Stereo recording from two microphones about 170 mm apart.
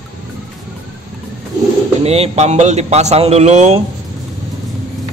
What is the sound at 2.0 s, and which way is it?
Speech, 35° right (ahead or behind).